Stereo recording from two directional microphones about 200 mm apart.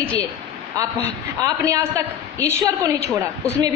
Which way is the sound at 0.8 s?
15° right (ahead or behind).